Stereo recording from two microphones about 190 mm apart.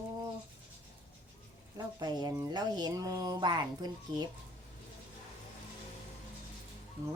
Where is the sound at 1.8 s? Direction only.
20° right (ahead or behind).